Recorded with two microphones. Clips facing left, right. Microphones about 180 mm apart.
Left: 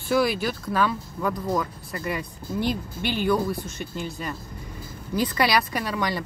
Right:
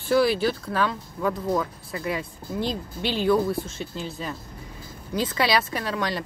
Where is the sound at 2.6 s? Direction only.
25° right (ahead or behind).